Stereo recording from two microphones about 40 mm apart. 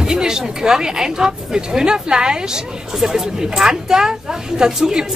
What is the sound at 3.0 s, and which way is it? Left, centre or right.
Speech, centre.